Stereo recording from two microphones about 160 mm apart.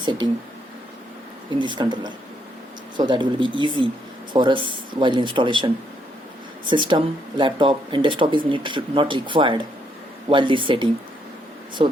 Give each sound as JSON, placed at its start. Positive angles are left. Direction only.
{"t": 0.0, "sound": "speech", "side_deg": -30}
{"t": 1.5, "sound": "speech", "side_deg": -30}